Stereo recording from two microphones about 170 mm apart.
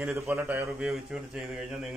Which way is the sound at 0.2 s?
15° right (ahead or behind).